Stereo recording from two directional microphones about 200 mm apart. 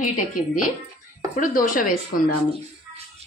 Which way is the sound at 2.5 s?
30° right (ahead or behind).